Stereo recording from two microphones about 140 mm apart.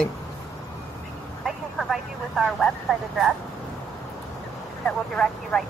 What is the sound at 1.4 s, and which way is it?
Speech, centre (ahead or behind).